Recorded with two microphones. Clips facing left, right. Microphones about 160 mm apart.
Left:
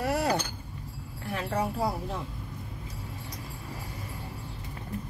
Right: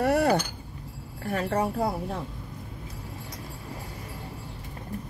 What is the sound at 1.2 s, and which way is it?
Speech, 45° right (ahead or behind).